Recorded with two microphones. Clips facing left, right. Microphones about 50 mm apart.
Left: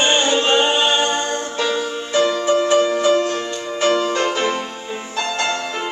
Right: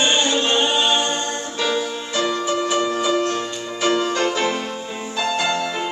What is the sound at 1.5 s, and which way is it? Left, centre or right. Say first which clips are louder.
Music: right 1 dB; centre.